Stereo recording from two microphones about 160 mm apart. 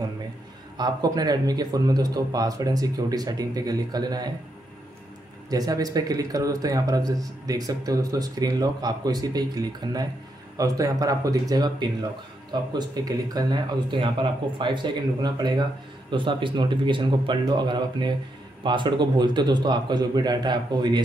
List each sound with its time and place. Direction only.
0.7 s speech: 25° right (ahead or behind)
5.5 s speech: 25° right (ahead or behind)